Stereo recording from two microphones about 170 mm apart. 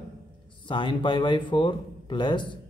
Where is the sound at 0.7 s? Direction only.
30° left (ahead or behind).